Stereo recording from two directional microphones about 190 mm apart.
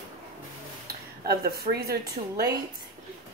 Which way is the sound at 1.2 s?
55° right (ahead or behind).